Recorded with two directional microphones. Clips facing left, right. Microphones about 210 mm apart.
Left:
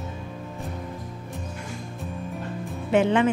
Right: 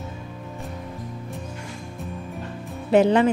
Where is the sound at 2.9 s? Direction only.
40° right (ahead or behind).